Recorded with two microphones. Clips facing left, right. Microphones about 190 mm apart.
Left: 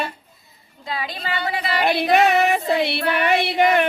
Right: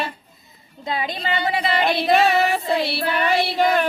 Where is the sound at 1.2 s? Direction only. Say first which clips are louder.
Right 3 dB; 20° right (ahead or behind).